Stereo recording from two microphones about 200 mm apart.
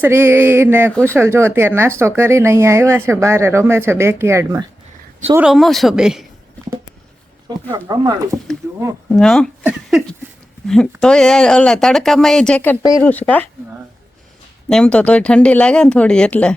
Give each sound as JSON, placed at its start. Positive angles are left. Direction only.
{"t": 0.0, "sound": "speech", "side_deg": -10}
{"t": 5.4, "sound": "speech", "side_deg": 0}
{"t": 7.7, "sound": "speech", "side_deg": -20}
{"t": 9.1, "sound": "speech", "side_deg": 0}
{"t": 14.7, "sound": "speech", "side_deg": 5}